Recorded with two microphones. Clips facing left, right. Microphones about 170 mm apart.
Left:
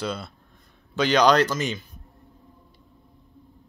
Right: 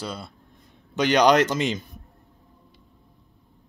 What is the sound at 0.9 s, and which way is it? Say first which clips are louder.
Speech: right 1 dB; 15° right (ahead or behind).